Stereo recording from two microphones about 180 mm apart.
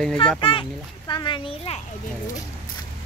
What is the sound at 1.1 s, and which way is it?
Speech, 25° left (ahead or behind).